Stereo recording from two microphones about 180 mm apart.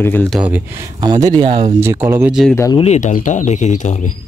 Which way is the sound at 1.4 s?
45° right (ahead or behind).